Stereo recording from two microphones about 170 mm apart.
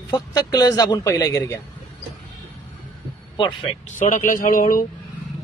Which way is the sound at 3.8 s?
50° left (ahead or behind).